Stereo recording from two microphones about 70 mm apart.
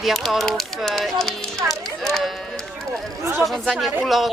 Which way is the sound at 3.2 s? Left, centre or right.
Right.